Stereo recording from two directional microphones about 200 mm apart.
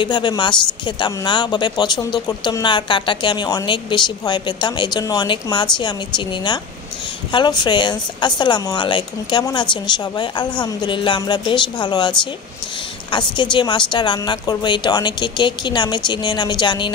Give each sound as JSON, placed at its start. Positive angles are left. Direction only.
{"t": 0.0, "sound": "speech", "side_deg": 25}
{"t": 13.4, "sound": "speech", "side_deg": 25}